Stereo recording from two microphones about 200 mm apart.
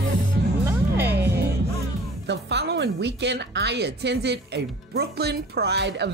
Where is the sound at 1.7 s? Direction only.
60° right (ahead or behind).